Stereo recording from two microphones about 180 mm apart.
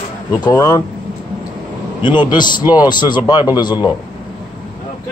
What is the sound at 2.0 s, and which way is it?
A man's voice, 25° left (ahead or behind).